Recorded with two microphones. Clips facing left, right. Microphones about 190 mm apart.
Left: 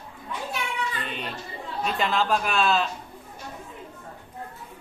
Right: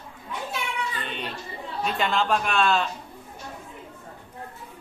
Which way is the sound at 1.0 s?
Centre (ahead or behind).